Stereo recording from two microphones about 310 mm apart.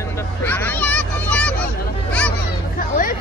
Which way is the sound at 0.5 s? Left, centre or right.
Centre.